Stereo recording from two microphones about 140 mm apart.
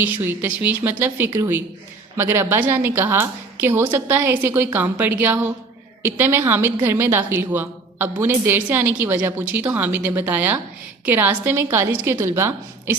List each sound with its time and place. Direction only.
0.0 s a woman's voice: 15° right (ahead or behind)